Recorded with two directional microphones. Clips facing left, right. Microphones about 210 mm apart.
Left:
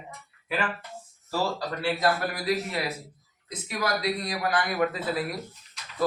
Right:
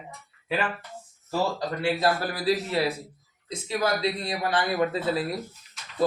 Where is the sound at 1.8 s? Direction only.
30° right (ahead or behind).